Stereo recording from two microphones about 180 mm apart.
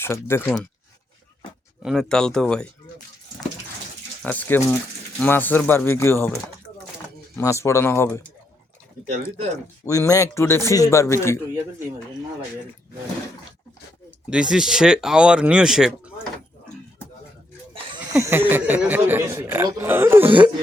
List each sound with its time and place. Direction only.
0.0 s a man's voice: 15° left (ahead or behind)
0.4 s speech: centre (ahead or behind)
1.8 s speech: centre (ahead or behind)
4.2 s a man's voice: 10° left (ahead or behind)
7.3 s a man's voice: 15° left (ahead or behind)
9.8 s a man's voice: 15° left (ahead or behind)
14.3 s speech: 5° right (ahead or behind)
18.0 s speech: 10° right (ahead or behind)